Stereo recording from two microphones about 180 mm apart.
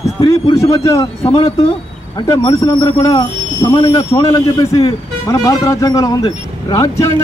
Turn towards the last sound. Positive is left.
turn(degrees=15)  # may be behind; listen again after turning